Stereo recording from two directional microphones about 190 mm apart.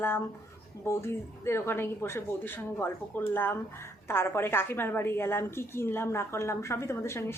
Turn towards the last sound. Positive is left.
turn(degrees=15)  # may be behind; listen again after turning